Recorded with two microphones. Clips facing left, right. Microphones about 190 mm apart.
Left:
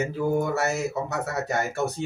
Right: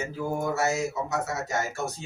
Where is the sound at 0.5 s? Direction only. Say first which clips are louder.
Left 1 dB; 60° left (ahead or behind).